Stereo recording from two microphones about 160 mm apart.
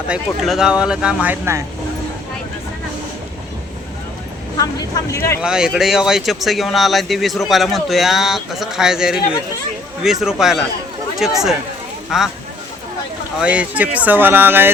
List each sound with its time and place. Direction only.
0.1 s speech: centre (ahead or behind)
4.5 s speech: 20° left (ahead or behind)
5.4 s speech: 5° right (ahead or behind)
13.4 s speech: 5° right (ahead or behind)